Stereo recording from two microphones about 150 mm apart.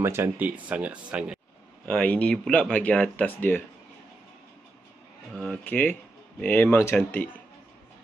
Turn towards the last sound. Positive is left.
turn(degrees=15)  # may be behind; listen again after turning